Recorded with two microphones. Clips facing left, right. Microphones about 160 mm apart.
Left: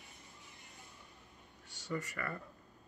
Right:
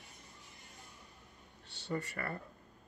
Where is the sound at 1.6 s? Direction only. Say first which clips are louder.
Right 2 dB; 30° right (ahead or behind).